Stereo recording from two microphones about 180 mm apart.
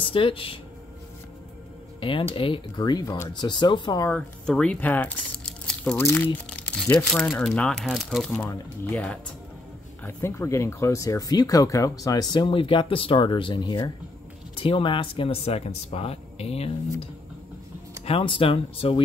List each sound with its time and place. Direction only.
0.0 s speech: 30° left (ahead or behind)
2.0 s music: 30° left (ahead or behind)
2.3 s speech: 30° left (ahead or behind)
4.1 s speech: 5° left (ahead or behind); by 18.9 s 30° left (ahead or behind)